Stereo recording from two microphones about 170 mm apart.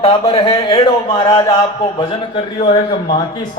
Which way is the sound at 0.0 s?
30° left (ahead or behind).